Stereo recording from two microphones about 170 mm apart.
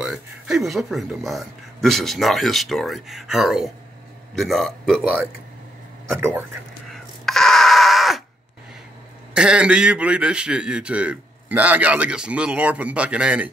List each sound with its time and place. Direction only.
0.0 s speech: centre (ahead or behind)
6.9 s a sound: centre (ahead or behind)
9.3 s a man's voice: 5° right (ahead or behind)